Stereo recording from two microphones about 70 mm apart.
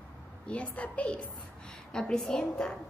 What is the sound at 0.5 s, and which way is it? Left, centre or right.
A woman's voice, centre.